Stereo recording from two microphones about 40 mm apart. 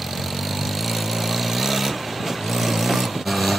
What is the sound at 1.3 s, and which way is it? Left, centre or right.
Vehicle, centre.